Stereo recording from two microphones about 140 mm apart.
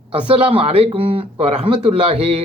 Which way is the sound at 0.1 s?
40° right (ahead or behind).